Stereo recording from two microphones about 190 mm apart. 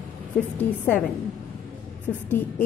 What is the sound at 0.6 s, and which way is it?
Speech, 10° left (ahead or behind).